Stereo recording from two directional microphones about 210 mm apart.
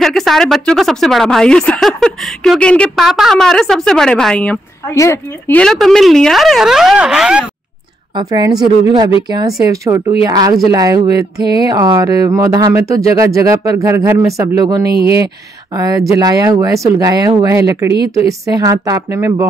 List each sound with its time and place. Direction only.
0.0 s a woman's voice: centre (ahead or behind)
8.1 s a woman's voice: 20° right (ahead or behind)
9.7 s a sound: 15° right (ahead or behind)